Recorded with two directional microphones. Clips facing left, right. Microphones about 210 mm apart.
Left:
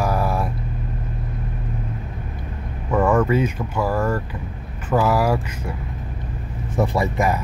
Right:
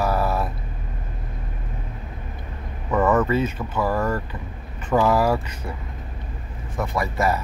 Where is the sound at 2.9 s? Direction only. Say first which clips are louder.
Left 2 dB; 10° left (ahead or behind).